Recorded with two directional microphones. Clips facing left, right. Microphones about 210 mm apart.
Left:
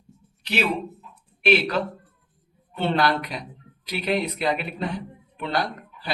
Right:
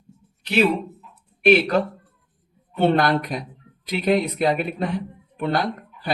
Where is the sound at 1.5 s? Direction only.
45° right (ahead or behind).